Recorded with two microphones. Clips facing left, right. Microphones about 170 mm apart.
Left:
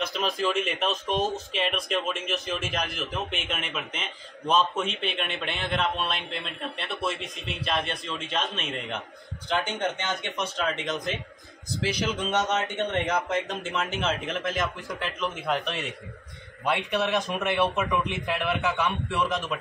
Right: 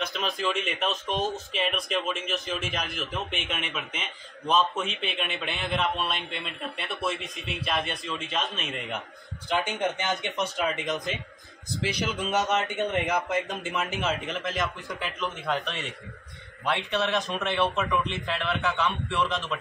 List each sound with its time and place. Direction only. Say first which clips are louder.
0.0 s speech: left 2 dB; centre (ahead or behind)
10.2 s a man's voice: right 1 dB; 20° right (ahead or behind)
10.8 s speech: even; centre (ahead or behind)
16.6 s a man's voice: left 1 dB; 15° left (ahead or behind)
19.0 s speech: even; 5° left (ahead or behind)